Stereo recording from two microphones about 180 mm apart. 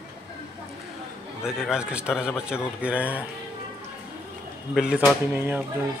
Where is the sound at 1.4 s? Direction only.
5° right (ahead or behind).